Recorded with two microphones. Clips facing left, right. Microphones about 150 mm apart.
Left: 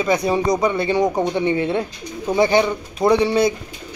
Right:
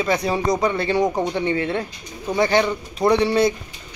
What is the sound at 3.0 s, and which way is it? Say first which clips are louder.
Speech: left 2 dB; centre (ahead or behind).